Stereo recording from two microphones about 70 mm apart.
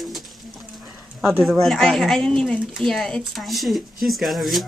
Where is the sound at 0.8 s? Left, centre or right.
Centre.